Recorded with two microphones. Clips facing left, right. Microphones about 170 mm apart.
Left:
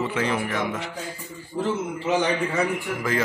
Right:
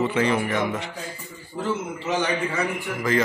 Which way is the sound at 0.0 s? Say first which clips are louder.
Right 3 dB; centre (ahead or behind).